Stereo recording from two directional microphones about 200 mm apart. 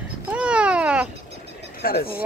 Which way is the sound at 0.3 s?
5° right (ahead or behind).